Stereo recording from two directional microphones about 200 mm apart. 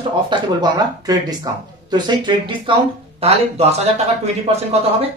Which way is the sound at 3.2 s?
30° right (ahead or behind).